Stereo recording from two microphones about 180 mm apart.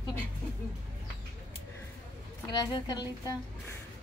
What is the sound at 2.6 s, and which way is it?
Speech, 20° left (ahead or behind).